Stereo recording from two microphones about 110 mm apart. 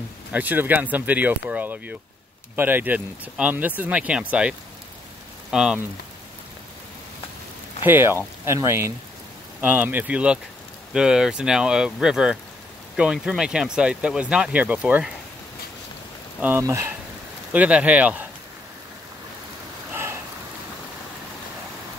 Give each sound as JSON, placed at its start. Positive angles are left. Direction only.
{"t": 0.3, "sound": "speech", "side_deg": -15}
{"t": 7.8, "sound": "speech", "side_deg": -20}
{"t": 16.3, "sound": "speech", "side_deg": -15}
{"t": 16.6, "sound": "speech", "side_deg": -30}
{"t": 17.5, "sound": "speech", "side_deg": -10}
{"t": 19.9, "sound": "rain", "side_deg": -25}